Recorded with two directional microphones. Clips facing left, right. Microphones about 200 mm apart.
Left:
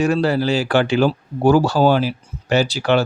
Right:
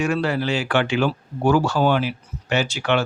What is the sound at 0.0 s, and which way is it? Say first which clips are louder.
Speech: left 5 dB; 35° left (ahead or behind).